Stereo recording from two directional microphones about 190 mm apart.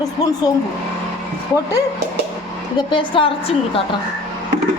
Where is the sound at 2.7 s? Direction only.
25° left (ahead or behind).